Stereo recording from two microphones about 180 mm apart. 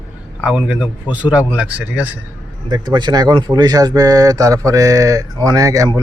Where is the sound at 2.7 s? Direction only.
25° right (ahead or behind).